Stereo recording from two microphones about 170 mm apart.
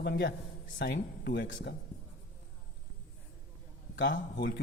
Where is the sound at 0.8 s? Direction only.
85° left.